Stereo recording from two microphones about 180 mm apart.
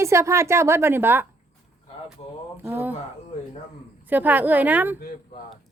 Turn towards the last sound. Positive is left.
turn(degrees=-10)  # may be behind; listen again after turning